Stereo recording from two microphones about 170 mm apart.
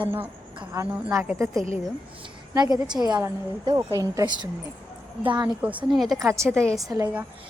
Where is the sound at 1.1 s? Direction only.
15° right (ahead or behind).